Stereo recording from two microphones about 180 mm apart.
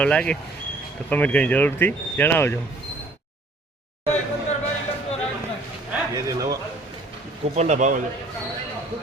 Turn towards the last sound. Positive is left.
turn(degrees=-40)  # may be behind; listen again after turning